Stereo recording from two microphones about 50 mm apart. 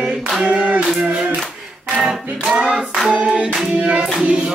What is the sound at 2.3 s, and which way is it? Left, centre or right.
Music, centre.